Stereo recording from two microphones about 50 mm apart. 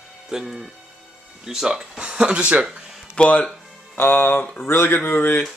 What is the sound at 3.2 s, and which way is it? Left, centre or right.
Speech, left.